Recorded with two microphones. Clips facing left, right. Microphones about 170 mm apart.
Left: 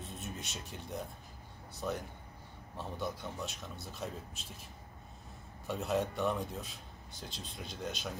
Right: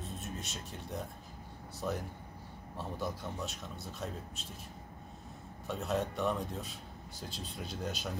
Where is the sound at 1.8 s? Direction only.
Centre (ahead or behind).